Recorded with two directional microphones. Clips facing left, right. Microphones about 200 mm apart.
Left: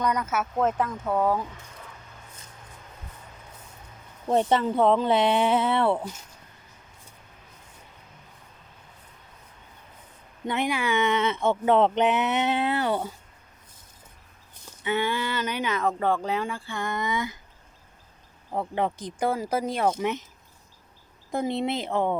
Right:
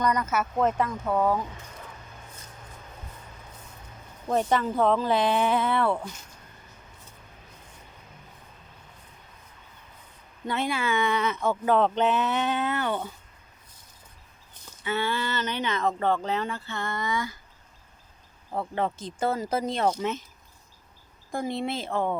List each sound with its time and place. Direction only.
0.0 s speech: 5° left (ahead or behind)
4.3 s speech: 30° left (ahead or behind)
10.4 s speech: 15° left (ahead or behind); by 13.1 s 35° left (ahead or behind)
14.8 s speech: 15° left (ahead or behind)
18.5 s speech: 15° left (ahead or behind)
21.3 s speech: 20° left (ahead or behind)